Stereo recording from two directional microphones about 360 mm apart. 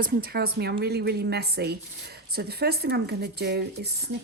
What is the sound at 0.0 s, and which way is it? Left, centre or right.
A woman's voice, right.